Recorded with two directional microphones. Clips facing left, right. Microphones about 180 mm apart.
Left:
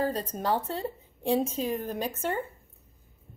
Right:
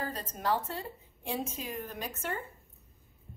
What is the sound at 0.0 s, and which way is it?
A woman's voice, 30° left (ahead or behind).